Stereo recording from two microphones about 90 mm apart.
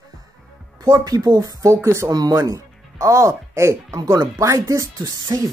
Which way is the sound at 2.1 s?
45° right (ahead or behind).